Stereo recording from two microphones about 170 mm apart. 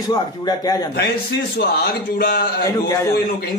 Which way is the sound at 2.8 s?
20° left (ahead or behind).